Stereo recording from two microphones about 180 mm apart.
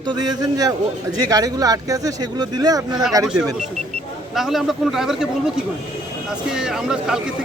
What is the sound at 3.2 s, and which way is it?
Speech, 5° right (ahead or behind).